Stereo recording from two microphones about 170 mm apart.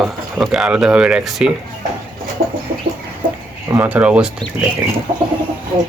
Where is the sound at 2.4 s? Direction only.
60° right (ahead or behind).